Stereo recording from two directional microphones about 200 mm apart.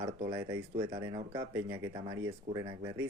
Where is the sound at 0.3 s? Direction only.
15° right (ahead or behind).